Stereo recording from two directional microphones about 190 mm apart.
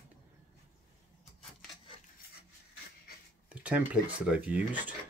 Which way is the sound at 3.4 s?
5° right (ahead or behind).